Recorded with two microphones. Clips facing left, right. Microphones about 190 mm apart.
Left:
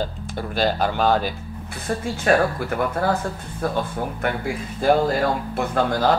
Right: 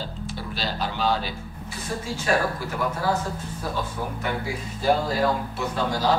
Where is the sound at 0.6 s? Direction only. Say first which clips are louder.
Left 8 dB; 50° left (ahead or behind).